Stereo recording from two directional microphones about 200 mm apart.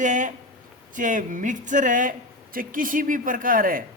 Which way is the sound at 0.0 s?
40° right (ahead or behind).